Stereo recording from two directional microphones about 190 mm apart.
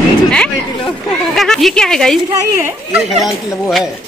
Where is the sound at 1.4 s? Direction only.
Centre (ahead or behind).